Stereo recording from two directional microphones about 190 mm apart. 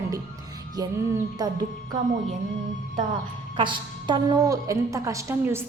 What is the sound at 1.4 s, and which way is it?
Speech, 20° right (ahead or behind).